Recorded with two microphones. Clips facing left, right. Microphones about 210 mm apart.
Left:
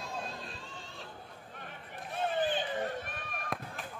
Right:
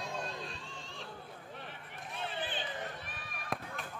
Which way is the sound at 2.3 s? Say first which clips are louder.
Left 9 dB; 45° left (ahead or behind).